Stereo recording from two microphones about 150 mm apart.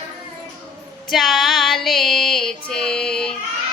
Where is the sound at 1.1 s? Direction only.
Centre (ahead or behind).